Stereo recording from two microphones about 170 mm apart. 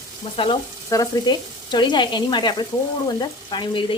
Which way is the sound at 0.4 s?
30° left (ahead or behind).